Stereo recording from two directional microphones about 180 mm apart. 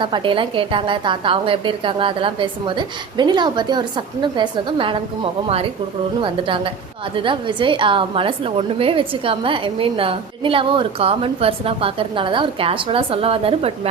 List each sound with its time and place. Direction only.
0.0 s a woman's voice: 25° right (ahead or behind)
7.2 s a woman's voice: 30° right (ahead or behind)